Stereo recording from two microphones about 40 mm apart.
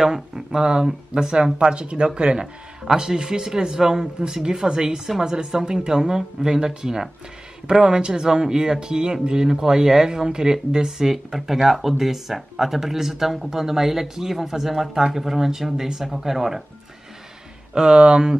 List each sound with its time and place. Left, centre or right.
0.0 s speech: centre
2.3 s a man's voice: centre
17.7 s speech: right